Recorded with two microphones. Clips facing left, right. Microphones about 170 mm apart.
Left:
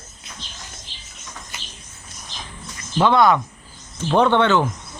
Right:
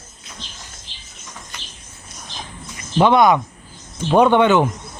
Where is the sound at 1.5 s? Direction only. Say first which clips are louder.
Even; 5° left (ahead or behind).